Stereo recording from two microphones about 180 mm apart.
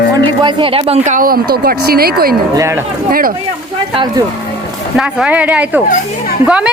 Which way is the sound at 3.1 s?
55° right (ahead or behind).